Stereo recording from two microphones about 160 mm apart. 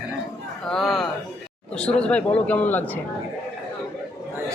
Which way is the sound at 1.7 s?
5° left (ahead or behind).